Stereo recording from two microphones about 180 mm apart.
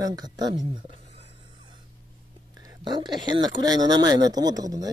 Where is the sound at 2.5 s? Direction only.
25° right (ahead or behind).